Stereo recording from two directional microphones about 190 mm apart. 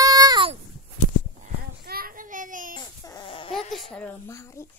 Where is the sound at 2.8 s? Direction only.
20° left (ahead or behind).